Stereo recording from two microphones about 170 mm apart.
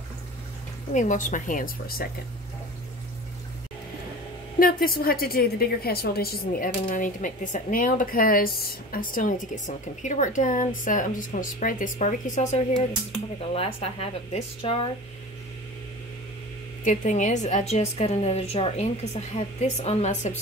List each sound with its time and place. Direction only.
0.9 s a woman's voice: 50° left (ahead or behind)
4.6 s a woman's voice: 55° left (ahead or behind); by 14.9 s 35° left (ahead or behind)
16.8 s a woman's voice: 45° left (ahead or behind)